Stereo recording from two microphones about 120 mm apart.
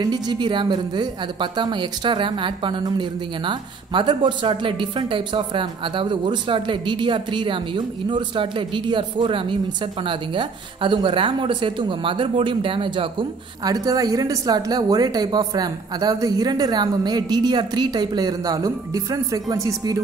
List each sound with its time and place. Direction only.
0.0 s a woman's voice: 40° right (ahead or behind)
13.7 s a woman's voice: 30° right (ahead or behind)